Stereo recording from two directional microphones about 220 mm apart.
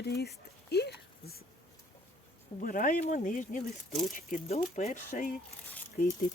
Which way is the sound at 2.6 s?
40° left (ahead or behind).